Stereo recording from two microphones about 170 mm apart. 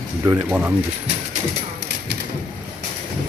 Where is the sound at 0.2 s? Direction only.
15° right (ahead or behind).